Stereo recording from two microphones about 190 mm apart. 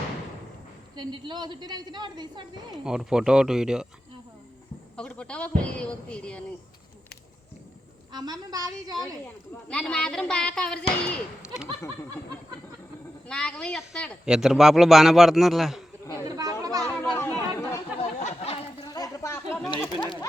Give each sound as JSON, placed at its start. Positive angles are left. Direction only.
{"t": 0.9, "sound": "a woman's voice", "side_deg": -25}
{"t": 2.8, "sound": "a woman's voice", "side_deg": -5}
{"t": 4.9, "sound": "a woman's voice", "side_deg": 5}
{"t": 8.1, "sound": "a woman's voice", "side_deg": -20}
{"t": 9.0, "sound": "a woman's voice", "side_deg": 5}
{"t": 13.2, "sound": "a woman's voice", "side_deg": 5}
{"t": 16.2, "sound": "children playing", "side_deg": -20}
{"t": 17.2, "sound": "chatter", "side_deg": 15}
{"t": 17.9, "sound": "a sound", "side_deg": 35}
{"t": 18.9, "sound": "a sound", "side_deg": 20}